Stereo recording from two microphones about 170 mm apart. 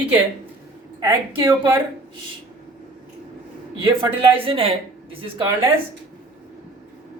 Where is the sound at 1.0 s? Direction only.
15° right (ahead or behind).